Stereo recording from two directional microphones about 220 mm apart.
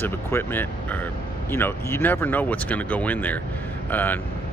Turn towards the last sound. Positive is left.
turn(degrees=10)  # may be behind; listen again after turning